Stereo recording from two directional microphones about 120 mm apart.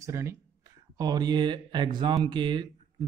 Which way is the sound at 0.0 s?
25° right (ahead or behind).